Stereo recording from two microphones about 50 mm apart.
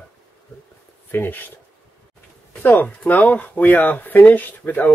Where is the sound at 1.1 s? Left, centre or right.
Left.